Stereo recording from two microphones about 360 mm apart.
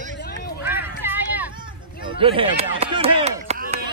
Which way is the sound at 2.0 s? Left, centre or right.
Centre.